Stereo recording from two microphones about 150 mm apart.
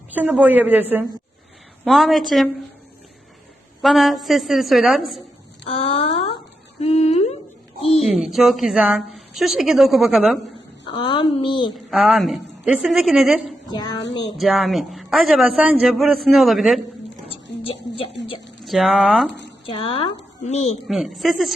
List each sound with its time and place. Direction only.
0.1 s a woman's voice: 10° right (ahead or behind)
1.8 s a man's voice: centre (ahead or behind)
3.8 s a man's voice: centre (ahead or behind)
5.6 s a sound: 40° left (ahead or behind)
8.0 s a man's voice: 5° right (ahead or behind)
10.9 s a woman's voice: 35° left (ahead or behind)
11.7 s a man's voice: centre (ahead or behind)
13.7 s a sound: 25° left (ahead or behind)
14.3 s a man's voice: centre (ahead or behind)
17.2 s a sound: 40° left (ahead or behind)
18.6 s a man's voice: centre (ahead or behind)
19.6 s a woman's voice: 35° left (ahead or behind)
20.8 s a man's voice: centre (ahead or behind)